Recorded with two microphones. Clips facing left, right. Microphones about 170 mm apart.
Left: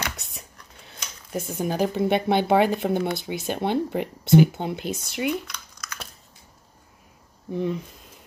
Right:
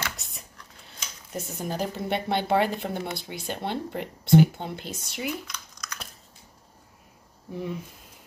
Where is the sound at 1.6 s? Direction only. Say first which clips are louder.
Left 7 dB; 10° left (ahead or behind).